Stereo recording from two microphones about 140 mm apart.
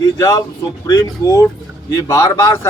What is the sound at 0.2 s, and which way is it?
Speech, 25° left (ahead or behind).